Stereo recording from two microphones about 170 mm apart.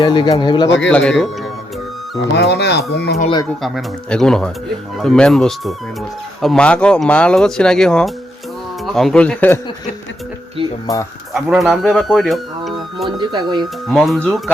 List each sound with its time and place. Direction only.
0.0 s speech: 25° left (ahead or behind)
0.9 s speech: 5° left (ahead or behind)
2.3 s speech: 85° left
3.6 s speech: centre (ahead or behind)
11.3 s speech: centre (ahead or behind)
13.1 s speech: 25° right (ahead or behind)
13.8 s speech: centre (ahead or behind)